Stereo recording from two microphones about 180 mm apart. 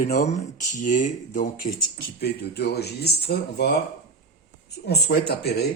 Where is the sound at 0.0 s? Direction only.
45° left (ahead or behind).